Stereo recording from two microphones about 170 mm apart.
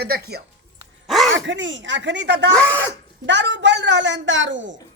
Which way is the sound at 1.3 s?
90° right.